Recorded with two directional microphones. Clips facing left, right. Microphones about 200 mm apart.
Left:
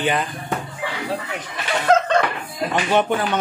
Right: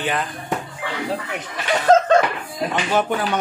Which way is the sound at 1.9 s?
45° right (ahead or behind).